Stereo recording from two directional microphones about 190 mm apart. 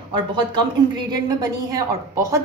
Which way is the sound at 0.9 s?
20° right (ahead or behind).